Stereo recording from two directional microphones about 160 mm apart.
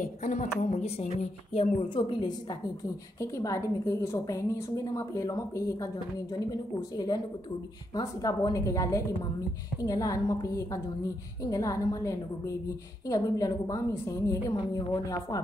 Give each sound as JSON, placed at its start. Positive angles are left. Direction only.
{"t": 0.0, "sound": "a woman's voice", "side_deg": 50}
{"t": 3.2, "sound": "a woman's voice", "side_deg": 20}